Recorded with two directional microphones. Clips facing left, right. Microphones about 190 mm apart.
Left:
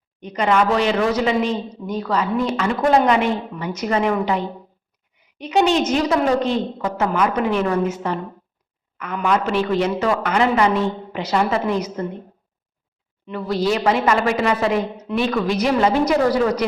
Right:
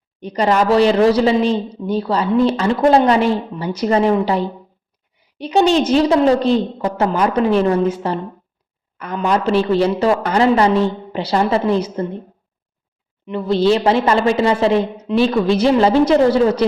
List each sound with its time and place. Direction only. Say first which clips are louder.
0.2 s speech: right 2 dB; 35° right (ahead or behind)
13.2 s a woman's voice: right 6 dB; 25° right (ahead or behind)